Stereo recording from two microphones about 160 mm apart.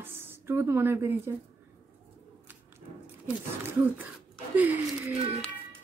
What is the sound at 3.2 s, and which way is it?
Speech, 10° right (ahead or behind).